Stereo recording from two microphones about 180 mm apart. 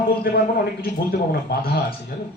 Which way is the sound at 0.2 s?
60° left (ahead or behind).